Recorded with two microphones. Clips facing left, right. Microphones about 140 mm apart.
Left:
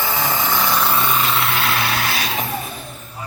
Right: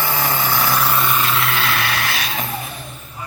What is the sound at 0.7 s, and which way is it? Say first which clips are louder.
Vehicle: even; centre (ahead or behind).